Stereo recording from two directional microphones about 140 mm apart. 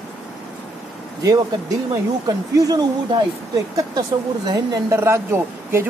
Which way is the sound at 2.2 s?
25° right (ahead or behind).